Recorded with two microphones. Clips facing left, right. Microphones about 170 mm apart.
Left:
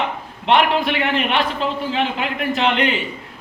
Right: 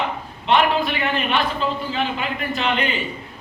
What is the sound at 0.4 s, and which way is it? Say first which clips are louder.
A man's voice: left 2 dB; 70° left (ahead or behind).